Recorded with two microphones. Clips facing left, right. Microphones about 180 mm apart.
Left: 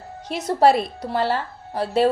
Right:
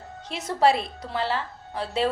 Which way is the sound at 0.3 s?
40° left (ahead or behind).